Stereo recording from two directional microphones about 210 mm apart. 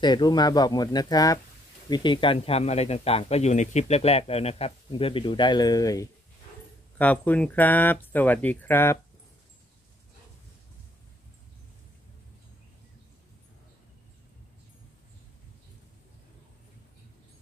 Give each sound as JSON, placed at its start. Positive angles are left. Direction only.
{"t": 0.0, "sound": "speech", "side_deg": 20}